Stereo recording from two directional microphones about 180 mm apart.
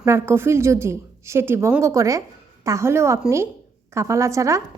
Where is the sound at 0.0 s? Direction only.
15° right (ahead or behind).